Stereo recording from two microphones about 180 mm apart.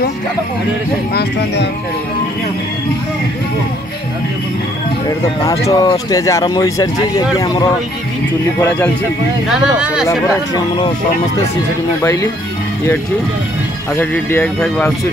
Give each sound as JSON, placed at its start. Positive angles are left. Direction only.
{"t": 5.4, "sound": "speech", "side_deg": 20}
{"t": 8.5, "sound": "speech", "side_deg": 10}
{"t": 12.0, "sound": "speech", "side_deg": 15}
{"t": 13.9, "sound": "speech", "side_deg": 10}